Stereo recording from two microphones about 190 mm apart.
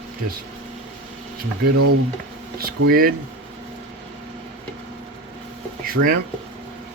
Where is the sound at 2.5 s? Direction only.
50° right (ahead or behind).